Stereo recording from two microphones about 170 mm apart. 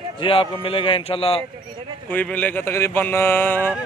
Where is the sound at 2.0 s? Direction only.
10° left (ahead or behind).